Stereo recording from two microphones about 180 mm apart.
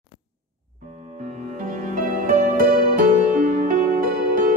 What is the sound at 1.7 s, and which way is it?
Music, 45° right (ahead or behind).